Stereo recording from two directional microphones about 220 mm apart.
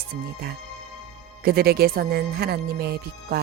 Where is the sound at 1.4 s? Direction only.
45° right (ahead or behind).